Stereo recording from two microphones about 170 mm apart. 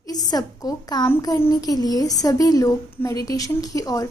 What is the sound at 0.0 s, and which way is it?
A woman's voice, 25° left (ahead or behind).